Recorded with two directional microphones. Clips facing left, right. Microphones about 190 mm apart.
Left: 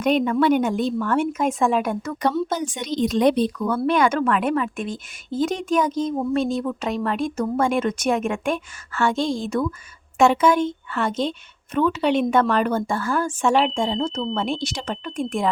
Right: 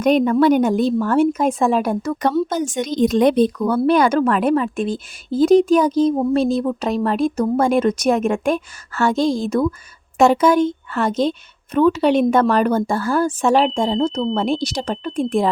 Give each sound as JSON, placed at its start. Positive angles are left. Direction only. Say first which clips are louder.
{"t": 0.0, "sound": "a woman's voice", "louder": "right 5 dB", "side_deg": -40}
{"t": 2.2, "sound": "a woman's voice", "louder": "right 3 dB", "side_deg": -45}